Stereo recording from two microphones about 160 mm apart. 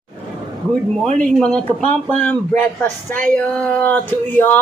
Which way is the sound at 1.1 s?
5° left (ahead or behind).